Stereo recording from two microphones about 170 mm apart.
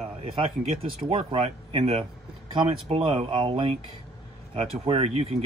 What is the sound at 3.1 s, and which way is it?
Speech, 35° right (ahead or behind).